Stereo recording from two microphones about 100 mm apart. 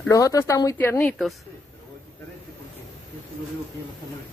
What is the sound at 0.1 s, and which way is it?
Speech, 35° left (ahead or behind).